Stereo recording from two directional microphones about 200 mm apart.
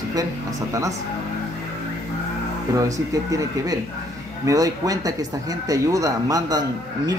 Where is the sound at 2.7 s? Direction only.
15° right (ahead or behind).